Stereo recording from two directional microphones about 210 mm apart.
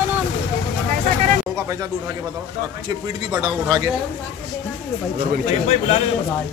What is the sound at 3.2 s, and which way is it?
Speech, 20° right (ahead or behind).